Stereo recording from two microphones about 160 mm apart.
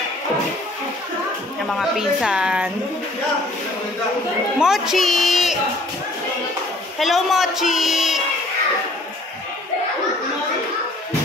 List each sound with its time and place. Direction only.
1.7 s a woman's voice: centre (ahead or behind)
4.6 s a sound: 5° right (ahead or behind)
7.0 s a woman's voice: centre (ahead or behind)